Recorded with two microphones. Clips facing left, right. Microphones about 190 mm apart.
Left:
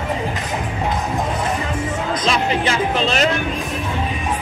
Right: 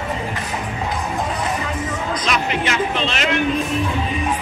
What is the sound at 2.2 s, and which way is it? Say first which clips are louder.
Music: left 3 dB; 30° left (ahead or behind).